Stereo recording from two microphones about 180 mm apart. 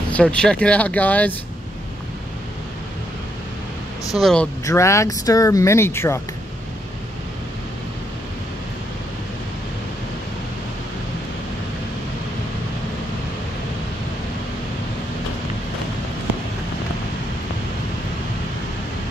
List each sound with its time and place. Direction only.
0.1 s speech: 5° left (ahead or behind)
4.2 s speech: 5° left (ahead or behind)
4.6 s speech: 15° left (ahead or behind)